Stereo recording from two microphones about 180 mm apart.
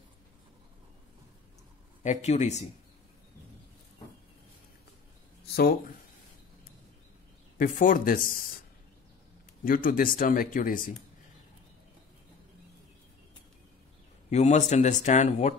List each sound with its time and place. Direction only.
2.0 s speech: 40° left (ahead or behind)
5.4 s a sound: 60° left (ahead or behind)
7.5 s speech: 50° left (ahead or behind)
9.7 s speech: 50° left (ahead or behind)
14.3 s speech: 40° left (ahead or behind)